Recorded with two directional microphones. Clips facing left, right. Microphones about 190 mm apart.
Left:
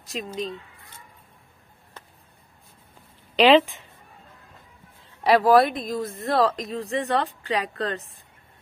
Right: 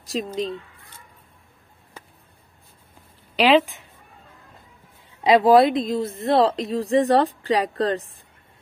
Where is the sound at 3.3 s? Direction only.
5° right (ahead or behind).